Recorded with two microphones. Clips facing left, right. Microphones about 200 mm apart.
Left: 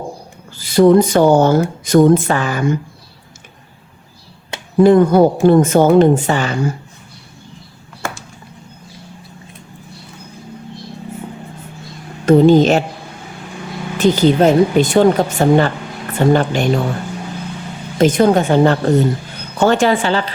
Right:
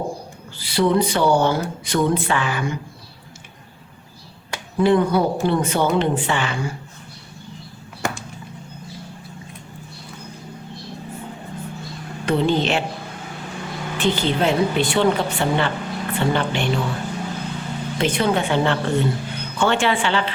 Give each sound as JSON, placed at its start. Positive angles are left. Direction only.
{"t": 0.6, "sound": "speech", "side_deg": 45}
{"t": 4.8, "sound": "speech", "side_deg": 45}
{"t": 12.2, "sound": "speech", "side_deg": 45}
{"t": 14.0, "sound": "a woman's voice", "side_deg": 40}
{"t": 17.9, "sound": "a woman's voice", "side_deg": 45}